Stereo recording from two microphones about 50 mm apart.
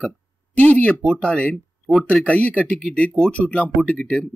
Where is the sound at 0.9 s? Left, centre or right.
Left.